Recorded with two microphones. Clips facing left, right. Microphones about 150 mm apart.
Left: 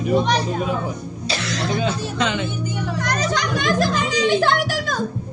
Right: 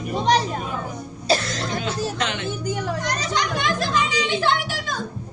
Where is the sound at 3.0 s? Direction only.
50° left (ahead or behind).